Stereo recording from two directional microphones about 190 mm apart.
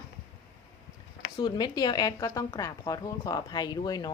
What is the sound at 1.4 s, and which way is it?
A woman's voice, 20° left (ahead or behind).